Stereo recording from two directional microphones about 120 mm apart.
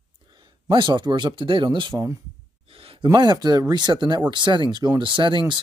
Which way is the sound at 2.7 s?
50° right (ahead or behind).